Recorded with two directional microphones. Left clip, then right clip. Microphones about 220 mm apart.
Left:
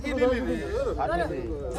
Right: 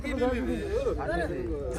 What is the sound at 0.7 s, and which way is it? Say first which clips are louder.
Speech: right 1 dB; 15° right (ahead or behind).